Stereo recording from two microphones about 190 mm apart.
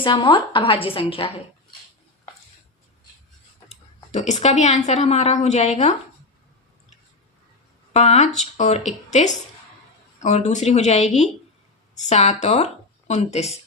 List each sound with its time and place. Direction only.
0.0 s a woman's voice: 25° left (ahead or behind)
4.1 s a woman's voice: 35° left (ahead or behind)
7.9 s a woman's voice: 35° left (ahead or behind)